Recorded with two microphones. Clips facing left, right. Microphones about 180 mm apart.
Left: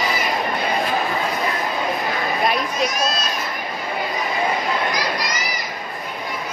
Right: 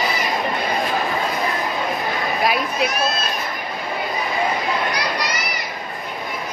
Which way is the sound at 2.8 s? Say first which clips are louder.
Right 1 dB; 60° right (ahead or behind).